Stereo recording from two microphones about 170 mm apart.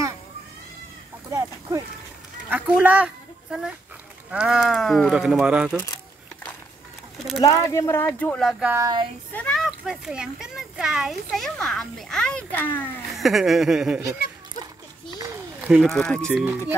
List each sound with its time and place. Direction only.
1.3 s a sound: 15° right (ahead or behind)
2.5 s speech: 10° right (ahead or behind)
4.3 s speech: 5° right (ahead or behind)
5.7 s speech: 10° left (ahead or behind)
7.4 s speech: 20° left (ahead or behind); by 8.6 s centre (ahead or behind)
8.6 s a sound: 20° right (ahead or behind)
9.3 s speech: 5° left (ahead or behind)
13.1 s speech: centre (ahead or behind)
15.1 s a sound: 15° right (ahead or behind)
15.7 s speech: centre (ahead or behind)